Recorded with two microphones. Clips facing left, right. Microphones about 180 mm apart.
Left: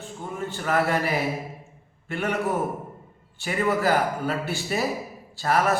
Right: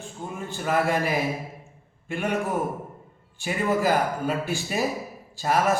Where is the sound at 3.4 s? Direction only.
15° right (ahead or behind).